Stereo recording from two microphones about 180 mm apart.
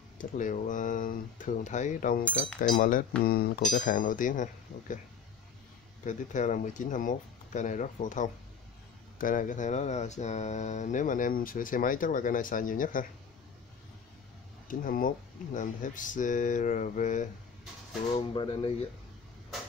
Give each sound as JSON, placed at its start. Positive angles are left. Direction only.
{"t": 0.2, "sound": "speech", "side_deg": 45}
{"t": 6.0, "sound": "speech", "side_deg": 45}
{"t": 14.7, "sound": "speech", "side_deg": 50}
{"t": 18.3, "sound": "speech", "side_deg": 25}